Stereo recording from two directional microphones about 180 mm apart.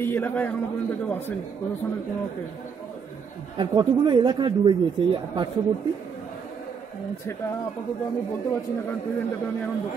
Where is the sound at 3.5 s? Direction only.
25° right (ahead or behind).